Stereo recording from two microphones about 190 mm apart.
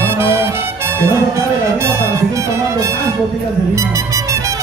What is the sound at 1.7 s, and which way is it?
Music, 15° right (ahead or behind).